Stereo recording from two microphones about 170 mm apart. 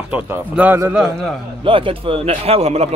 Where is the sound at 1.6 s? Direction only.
30° right (ahead or behind).